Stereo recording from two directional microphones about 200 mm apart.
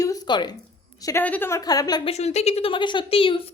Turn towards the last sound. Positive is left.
turn(degrees=25)  # may be behind; listen again after turning